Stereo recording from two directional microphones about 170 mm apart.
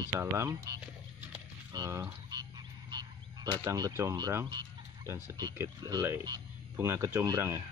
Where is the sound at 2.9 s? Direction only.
25° right (ahead or behind).